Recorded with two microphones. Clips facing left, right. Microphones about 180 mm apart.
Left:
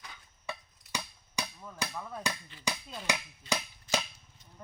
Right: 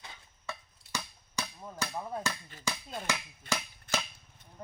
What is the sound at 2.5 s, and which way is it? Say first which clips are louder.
Speech: even; 45° right (ahead or behind).